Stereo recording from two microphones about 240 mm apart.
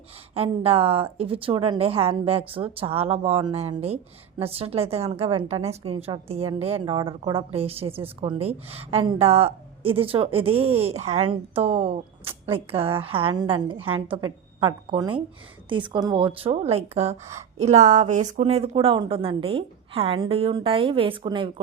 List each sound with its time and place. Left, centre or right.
0.3 s a woman's voice: right